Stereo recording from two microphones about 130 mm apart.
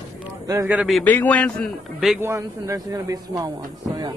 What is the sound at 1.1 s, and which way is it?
A man's voice, 10° left (ahead or behind).